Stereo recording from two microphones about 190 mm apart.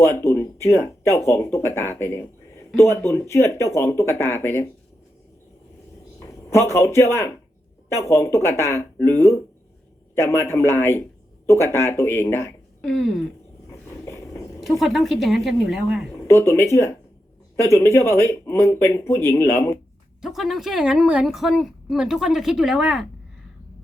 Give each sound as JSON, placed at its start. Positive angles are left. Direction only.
{"t": 0.0, "sound": "speech", "side_deg": 15}
{"t": 6.1, "sound": "speech", "side_deg": 15}
{"t": 12.8, "sound": "a woman's voice", "side_deg": 0}
{"t": 13.7, "sound": "a sound", "side_deg": 15}
{"t": 14.6, "sound": "a woman's voice", "side_deg": 0}
{"t": 16.1, "sound": "speech", "side_deg": 15}
{"t": 17.7, "sound": "speech", "side_deg": 15}
{"t": 20.2, "sound": "a woman's voice", "side_deg": 0}